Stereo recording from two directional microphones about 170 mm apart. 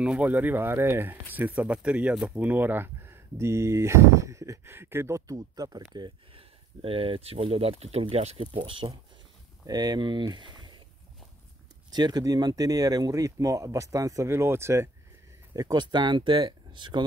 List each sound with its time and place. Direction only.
0.0 s speech: 10° right (ahead or behind); by 10.8 s 25° right (ahead or behind)
11.9 s speech: 25° right (ahead or behind)